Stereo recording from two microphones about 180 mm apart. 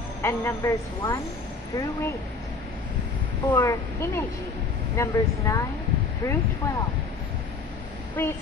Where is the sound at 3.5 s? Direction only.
15° left (ahead or behind).